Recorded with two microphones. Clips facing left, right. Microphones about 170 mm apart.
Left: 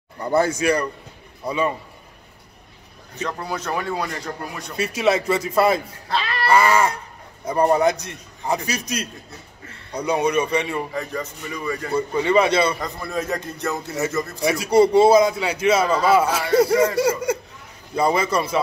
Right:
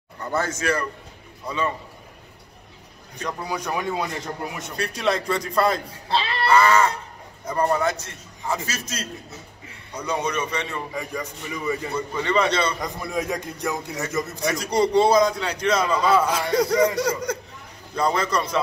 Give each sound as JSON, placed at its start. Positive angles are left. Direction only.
{"t": 0.2, "sound": "a man's voice", "side_deg": 10}
{"t": 3.3, "sound": "speech", "side_deg": -15}
{"t": 4.7, "sound": "speech", "side_deg": 5}
{"t": 6.0, "sound": "speech", "side_deg": -25}
{"t": 6.5, "sound": "a man's voice", "side_deg": 10}
{"t": 10.9, "sound": "speech", "side_deg": -10}
{"t": 12.1, "sound": "a man's voice", "side_deg": 10}
{"t": 12.8, "sound": "speech", "side_deg": -15}
{"t": 14.4, "sound": "a man's voice", "side_deg": 5}